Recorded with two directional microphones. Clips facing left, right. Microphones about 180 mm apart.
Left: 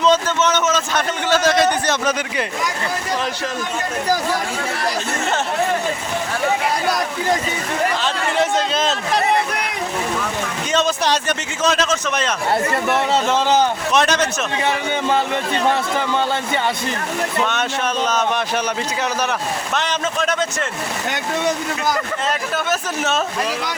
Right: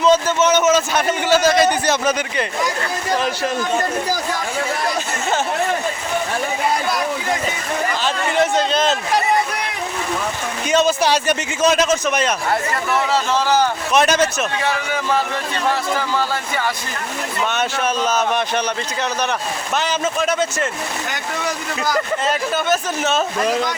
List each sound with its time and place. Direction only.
0.0 s a sound: 10° right (ahead or behind)
8.0 s speech: centre (ahead or behind)
10.7 s a man's voice: 10° right (ahead or behind)
12.7 s speech: 25° left (ahead or behind)
13.9 s a man's voice: 5° right (ahead or behind)
14.6 s speech: 25° left (ahead or behind)
17.4 s speech: 5° right (ahead or behind)
19.7 s speech: 5° right (ahead or behind)
22.3 s speech: centre (ahead or behind)